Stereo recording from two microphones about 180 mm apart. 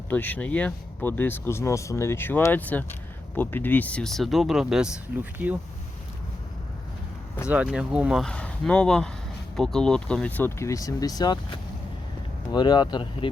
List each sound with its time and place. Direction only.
0.1 s speech: 10° left (ahead or behind); by 5.3 s 5° right (ahead or behind)
7.4 s speech: 5° right (ahead or behind); by 11.3 s 20° left (ahead or behind)
12.5 s speech: 25° left (ahead or behind)